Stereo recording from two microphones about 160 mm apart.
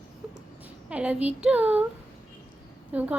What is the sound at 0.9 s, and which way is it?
Speech, 10° right (ahead or behind).